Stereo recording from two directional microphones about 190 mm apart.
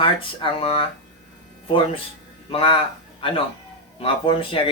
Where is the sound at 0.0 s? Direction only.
30° left (ahead or behind).